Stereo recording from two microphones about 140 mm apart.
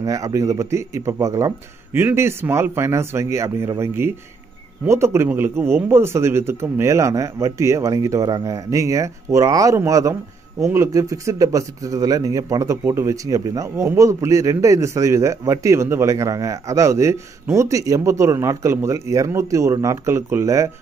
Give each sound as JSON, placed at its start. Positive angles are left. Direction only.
{"t": 0.0, "sound": "speech", "side_deg": -25}